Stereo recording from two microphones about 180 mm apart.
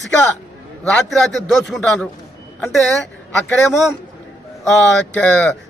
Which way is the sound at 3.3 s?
5° left (ahead or behind).